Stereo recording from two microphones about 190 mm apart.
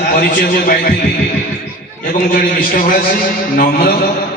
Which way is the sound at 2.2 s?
45° left (ahead or behind).